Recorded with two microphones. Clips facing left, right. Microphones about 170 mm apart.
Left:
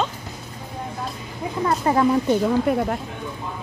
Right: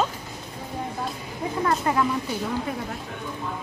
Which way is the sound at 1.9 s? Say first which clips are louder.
Left 6 dB; 25° left (ahead or behind).